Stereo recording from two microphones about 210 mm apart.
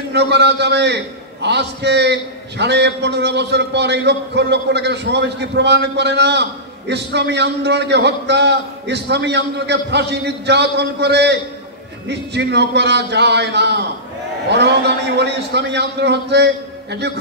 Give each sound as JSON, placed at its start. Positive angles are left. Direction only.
{"t": 0.1, "sound": "a man's voice", "side_deg": -55}